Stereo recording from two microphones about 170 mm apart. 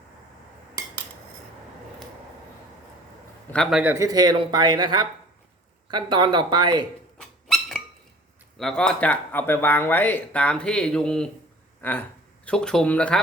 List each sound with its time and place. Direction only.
3.5 s speech: centre (ahead or behind)
3.9 s speech: 20° right (ahead or behind)
7.2 s dog: 5° left (ahead or behind)
8.5 s speech: 5° left (ahead or behind)